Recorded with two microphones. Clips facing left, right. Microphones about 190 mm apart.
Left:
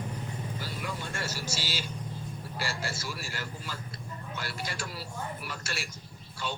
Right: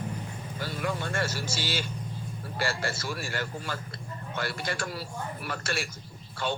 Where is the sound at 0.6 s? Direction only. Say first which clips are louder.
Right 10 dB; 55° right (ahead or behind).